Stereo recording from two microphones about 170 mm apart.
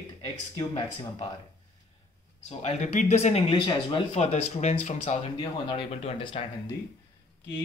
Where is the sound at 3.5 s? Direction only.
30° left (ahead or behind).